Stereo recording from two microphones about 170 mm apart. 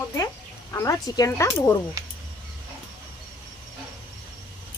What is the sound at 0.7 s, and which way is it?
Speech, 20° left (ahead or behind).